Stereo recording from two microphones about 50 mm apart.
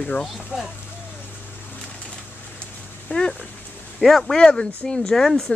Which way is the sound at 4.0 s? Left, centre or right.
Centre.